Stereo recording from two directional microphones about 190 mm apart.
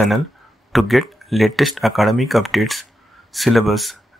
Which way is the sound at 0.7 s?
Centre (ahead or behind).